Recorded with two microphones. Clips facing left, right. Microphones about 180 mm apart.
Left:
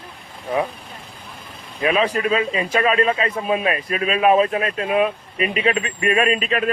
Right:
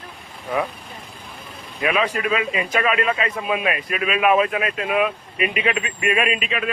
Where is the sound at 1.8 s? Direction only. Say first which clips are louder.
Left 2 dB; 30° left (ahead or behind).